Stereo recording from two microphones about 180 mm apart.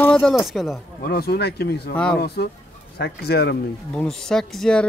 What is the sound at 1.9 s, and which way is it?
Speech, 5° left (ahead or behind).